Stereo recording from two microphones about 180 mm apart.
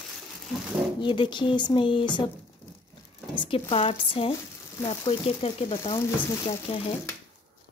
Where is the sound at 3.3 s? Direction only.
30° left (ahead or behind).